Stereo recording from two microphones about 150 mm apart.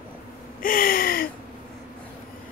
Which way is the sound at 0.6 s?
70° left (ahead or behind).